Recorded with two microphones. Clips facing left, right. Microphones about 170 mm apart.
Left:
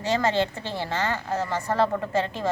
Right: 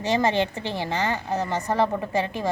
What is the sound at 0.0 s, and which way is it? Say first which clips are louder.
A woman's voice: right 1 dB; 15° right (ahead or behind).